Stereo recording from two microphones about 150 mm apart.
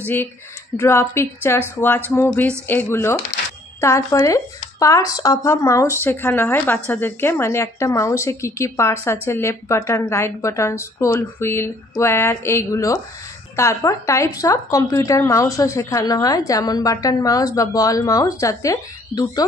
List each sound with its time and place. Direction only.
0.0 s a woman's voice: 15° left (ahead or behind)